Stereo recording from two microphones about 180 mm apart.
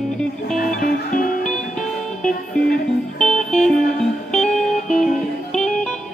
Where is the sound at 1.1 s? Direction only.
45° left (ahead or behind).